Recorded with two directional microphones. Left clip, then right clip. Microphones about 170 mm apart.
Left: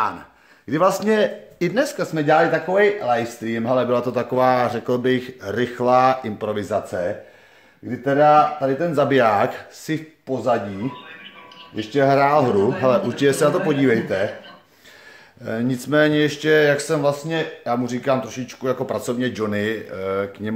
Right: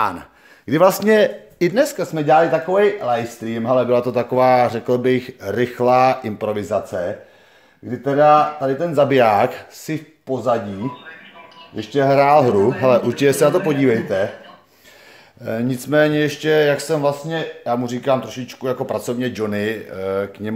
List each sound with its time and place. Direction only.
0.7 s speech: 40° right (ahead or behind); by 7.0 s 20° right (ahead or behind)
8.0 s speech: 15° right (ahead or behind)
11.7 s speech: 20° right (ahead or behind)
15.4 s speech: 15° right (ahead or behind)